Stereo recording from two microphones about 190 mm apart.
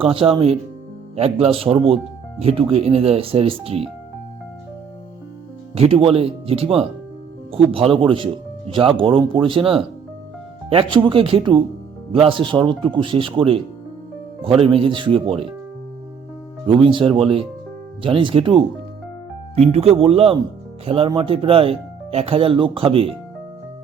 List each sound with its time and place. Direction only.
0.0 s speech: 30° right (ahead or behind)
5.7 s speech: 30° right (ahead or behind)
10.9 s speech: 25° right (ahead or behind)
16.6 s speech: 25° right (ahead or behind)
19.7 s speech: 30° right (ahead or behind)